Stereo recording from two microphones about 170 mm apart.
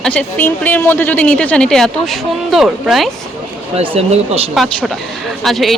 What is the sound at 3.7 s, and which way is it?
Speech, 35° right (ahead or behind).